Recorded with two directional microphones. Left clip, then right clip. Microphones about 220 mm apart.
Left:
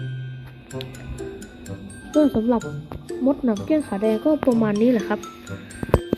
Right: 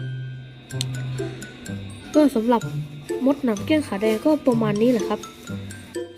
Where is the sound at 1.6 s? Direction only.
10° right (ahead or behind).